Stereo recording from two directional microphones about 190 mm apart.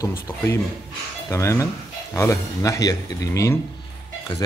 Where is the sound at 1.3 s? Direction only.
15° left (ahead or behind).